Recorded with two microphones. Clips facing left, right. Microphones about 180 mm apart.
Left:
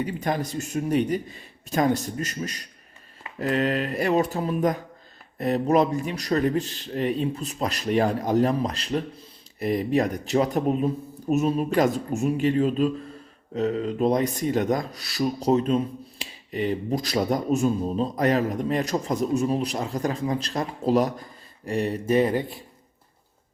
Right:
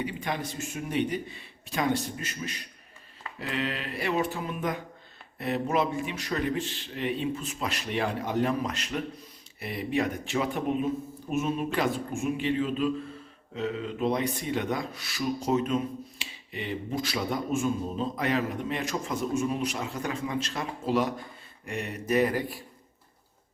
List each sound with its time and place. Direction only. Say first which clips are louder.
0.0 s speech: left 5 dB; 45° left (ahead or behind); by 22.6 s 25° left (ahead or behind)